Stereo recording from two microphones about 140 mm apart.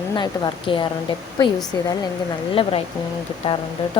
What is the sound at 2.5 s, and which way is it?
Speech, 40° left (ahead or behind).